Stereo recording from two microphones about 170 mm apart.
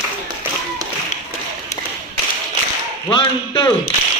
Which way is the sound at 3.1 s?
30° left (ahead or behind).